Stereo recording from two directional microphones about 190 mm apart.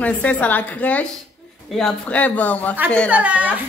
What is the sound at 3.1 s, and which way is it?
Speech, 10° right (ahead or behind).